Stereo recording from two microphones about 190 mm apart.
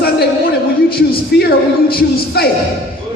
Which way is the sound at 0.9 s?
55° left (ahead or behind).